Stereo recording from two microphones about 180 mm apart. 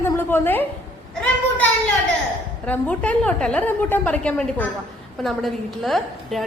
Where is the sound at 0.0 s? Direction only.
15° left (ahead or behind).